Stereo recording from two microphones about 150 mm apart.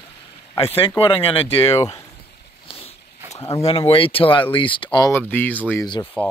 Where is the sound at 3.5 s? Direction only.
40° left (ahead or behind).